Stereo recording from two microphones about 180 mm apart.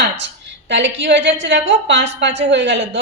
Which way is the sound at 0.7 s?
80° right.